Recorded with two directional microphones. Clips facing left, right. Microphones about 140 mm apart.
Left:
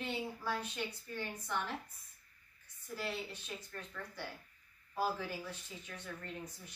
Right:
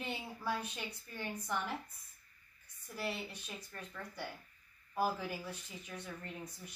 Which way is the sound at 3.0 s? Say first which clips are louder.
Right 1 dB; 10° right (ahead or behind).